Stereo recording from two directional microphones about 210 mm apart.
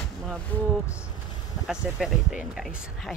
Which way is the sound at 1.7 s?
5° right (ahead or behind).